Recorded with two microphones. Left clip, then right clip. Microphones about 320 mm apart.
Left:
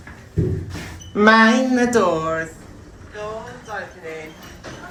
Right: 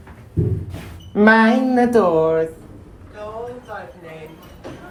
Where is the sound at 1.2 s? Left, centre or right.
Centre.